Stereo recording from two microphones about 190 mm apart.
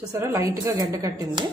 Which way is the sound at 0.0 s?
20° right (ahead or behind).